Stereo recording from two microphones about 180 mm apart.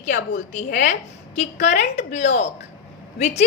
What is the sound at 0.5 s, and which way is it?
A woman's voice, 45° left (ahead or behind).